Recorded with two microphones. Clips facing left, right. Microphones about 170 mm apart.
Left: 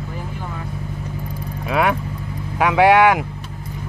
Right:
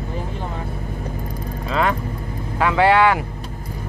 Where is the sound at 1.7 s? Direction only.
10° left (ahead or behind).